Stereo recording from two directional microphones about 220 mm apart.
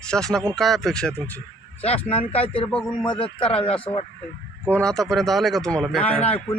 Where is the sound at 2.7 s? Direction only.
5° left (ahead or behind).